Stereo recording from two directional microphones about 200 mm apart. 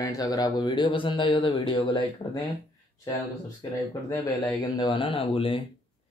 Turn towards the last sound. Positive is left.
turn(degrees=25)  # may be behind; listen again after turning